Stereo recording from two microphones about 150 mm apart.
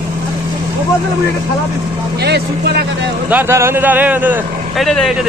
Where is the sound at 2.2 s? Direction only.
90° right.